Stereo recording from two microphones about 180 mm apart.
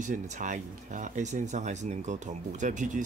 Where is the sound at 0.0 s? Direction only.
45° right (ahead or behind).